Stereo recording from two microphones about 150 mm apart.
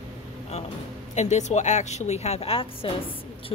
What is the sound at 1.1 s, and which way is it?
A woman's voice, 50° left (ahead or behind).